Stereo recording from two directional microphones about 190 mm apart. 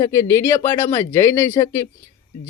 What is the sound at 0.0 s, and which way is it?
Speech, 15° left (ahead or behind).